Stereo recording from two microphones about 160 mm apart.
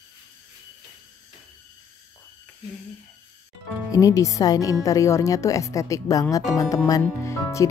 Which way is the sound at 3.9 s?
20° left (ahead or behind).